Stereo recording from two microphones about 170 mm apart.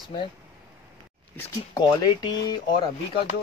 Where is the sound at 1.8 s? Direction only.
25° left (ahead or behind).